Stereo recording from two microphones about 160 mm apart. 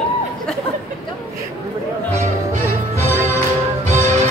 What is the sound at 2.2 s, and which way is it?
Music, 45° right (ahead or behind).